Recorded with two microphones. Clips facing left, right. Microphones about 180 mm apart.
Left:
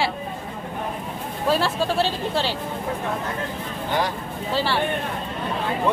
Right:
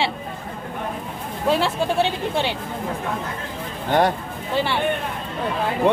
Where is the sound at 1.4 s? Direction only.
20° right (ahead or behind).